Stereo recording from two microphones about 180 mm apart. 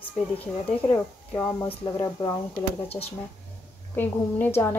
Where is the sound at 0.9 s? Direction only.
10° left (ahead or behind).